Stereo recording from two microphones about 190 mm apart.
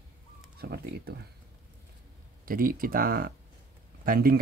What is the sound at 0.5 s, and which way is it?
Speech, 55° right (ahead or behind).